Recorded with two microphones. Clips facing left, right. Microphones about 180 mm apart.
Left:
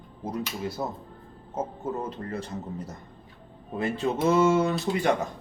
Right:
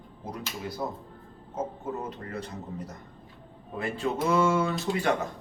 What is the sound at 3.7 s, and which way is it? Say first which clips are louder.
Speech: left 3 dB; 20° left (ahead or behind).